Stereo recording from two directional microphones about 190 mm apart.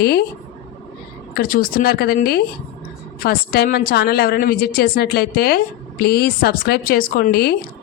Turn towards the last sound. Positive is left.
turn(degrees=55)  # may be behind; listen again after turning